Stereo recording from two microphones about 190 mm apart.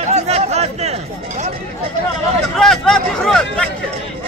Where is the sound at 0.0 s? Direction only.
35° right (ahead or behind).